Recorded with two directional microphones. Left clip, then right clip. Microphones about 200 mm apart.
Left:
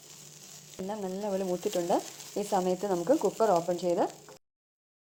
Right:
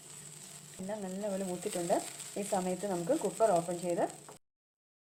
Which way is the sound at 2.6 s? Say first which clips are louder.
Left 6 dB; 30° left (ahead or behind).